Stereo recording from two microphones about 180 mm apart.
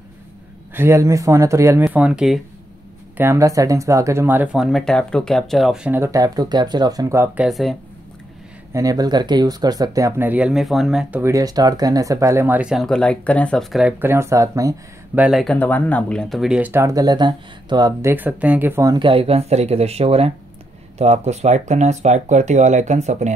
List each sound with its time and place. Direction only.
0.7 s speech: 15° right (ahead or behind)
3.2 s speech: 15° right (ahead or behind)
7.4 s speech: centre (ahead or behind)
8.7 s speech: 20° right (ahead or behind)
15.2 s speech: centre (ahead or behind); by 18.1 s 20° right (ahead or behind)
18.1 s speech: 10° right (ahead or behind); by 23.3 s 40° right (ahead or behind)